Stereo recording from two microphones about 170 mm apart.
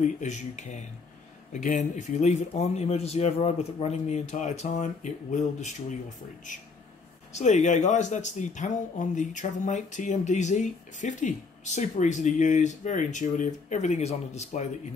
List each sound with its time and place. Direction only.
0.0 s speech: 45° left (ahead or behind)
7.3 s speech: 45° left (ahead or behind)